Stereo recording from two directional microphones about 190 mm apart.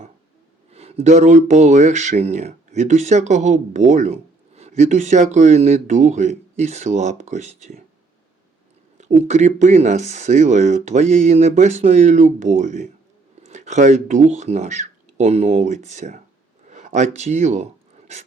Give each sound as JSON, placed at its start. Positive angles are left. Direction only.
{"t": 0.7, "sound": "speech", "side_deg": -35}
{"t": 9.0, "sound": "speech", "side_deg": -35}